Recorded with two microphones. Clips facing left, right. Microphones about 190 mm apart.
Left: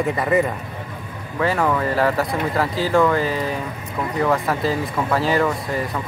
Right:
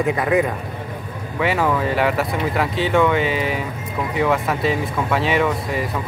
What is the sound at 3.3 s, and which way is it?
Speech, 85° right.